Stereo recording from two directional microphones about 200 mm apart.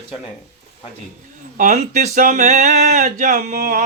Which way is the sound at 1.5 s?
40° right (ahead or behind).